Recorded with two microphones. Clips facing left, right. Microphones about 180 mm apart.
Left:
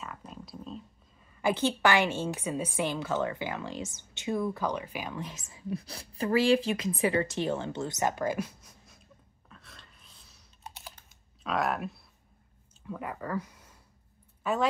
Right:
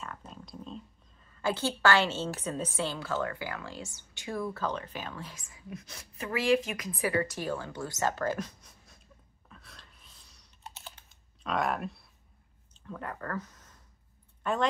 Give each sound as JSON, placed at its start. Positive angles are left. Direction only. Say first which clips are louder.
{"t": 0.3, "sound": "a woman's voice", "louder": "left 1 dB", "side_deg": 5}
{"t": 9.5, "sound": "gasp", "louder": "even", "side_deg": 0}
{"t": 11.4, "sound": "speech", "louder": "left 1 dB", "side_deg": 0}